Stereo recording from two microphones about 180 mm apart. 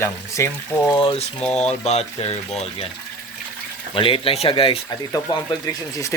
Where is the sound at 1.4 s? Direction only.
5° left (ahead or behind).